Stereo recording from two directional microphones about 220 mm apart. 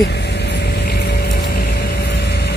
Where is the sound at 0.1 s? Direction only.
50° left (ahead or behind).